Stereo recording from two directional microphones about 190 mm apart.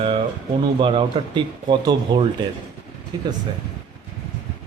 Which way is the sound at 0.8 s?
25° right (ahead or behind).